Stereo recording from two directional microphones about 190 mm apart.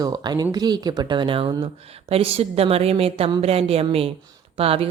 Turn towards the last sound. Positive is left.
turn(degrees=-30)  # may be behind; listen again after turning